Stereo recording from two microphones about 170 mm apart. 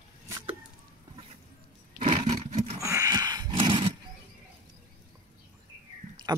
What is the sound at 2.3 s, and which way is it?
Roar, 40° right (ahead or behind).